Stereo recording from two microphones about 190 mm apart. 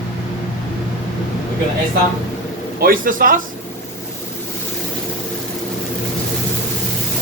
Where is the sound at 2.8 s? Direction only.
50° right (ahead or behind).